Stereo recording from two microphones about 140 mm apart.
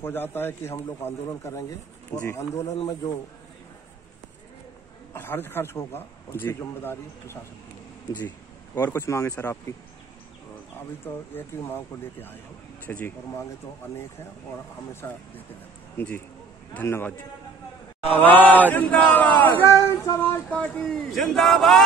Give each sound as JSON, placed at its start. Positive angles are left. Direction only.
{"t": 0.0, "sound": "chant", "side_deg": 15}
{"t": 0.8, "sound": "speech", "side_deg": 15}
{"t": 5.1, "sound": "chant", "side_deg": 15}
{"t": 8.7, "sound": "speech", "side_deg": 15}
{"t": 11.1, "sound": "chant", "side_deg": 15}
{"t": 14.9, "sound": "chant", "side_deg": 15}